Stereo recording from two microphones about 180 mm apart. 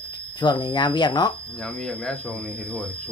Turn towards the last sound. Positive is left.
turn(degrees=5)  # may be behind; listen again after turning